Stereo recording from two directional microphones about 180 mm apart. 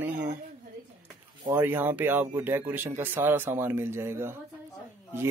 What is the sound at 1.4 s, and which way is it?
Speech, 10° right (ahead or behind).